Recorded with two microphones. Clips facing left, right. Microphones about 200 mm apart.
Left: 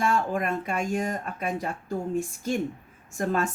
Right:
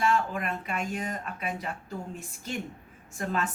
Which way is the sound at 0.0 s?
45° left (ahead or behind).